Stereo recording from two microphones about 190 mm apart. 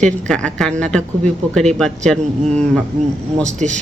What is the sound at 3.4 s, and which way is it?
Speech, 40° right (ahead or behind).